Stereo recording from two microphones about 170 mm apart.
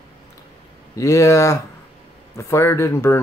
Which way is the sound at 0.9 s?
20° left (ahead or behind).